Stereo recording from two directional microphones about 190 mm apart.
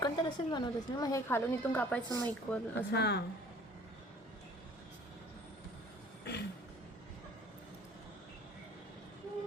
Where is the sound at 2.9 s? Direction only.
60° left (ahead or behind).